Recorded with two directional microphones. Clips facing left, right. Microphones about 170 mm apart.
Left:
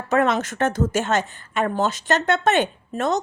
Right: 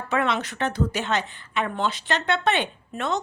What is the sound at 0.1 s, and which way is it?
A woman's voice, 45° left (ahead or behind).